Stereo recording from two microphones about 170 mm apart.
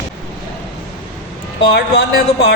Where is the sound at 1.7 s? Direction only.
75° left (ahead or behind).